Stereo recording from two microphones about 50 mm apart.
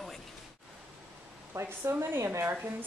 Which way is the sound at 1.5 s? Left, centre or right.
Right.